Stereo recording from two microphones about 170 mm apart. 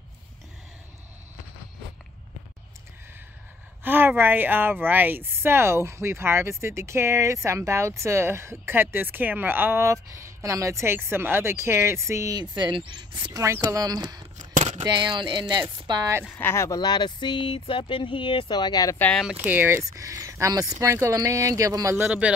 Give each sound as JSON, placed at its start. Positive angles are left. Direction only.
{"t": 3.8, "sound": "a woman's voice", "side_deg": -10}
{"t": 15.9, "sound": "a woman's voice", "side_deg": -15}
{"t": 16.3, "sound": "speech", "side_deg": 15}
{"t": 18.9, "sound": "speech", "side_deg": 5}
{"t": 19.2, "sound": "a woman's voice", "side_deg": -10}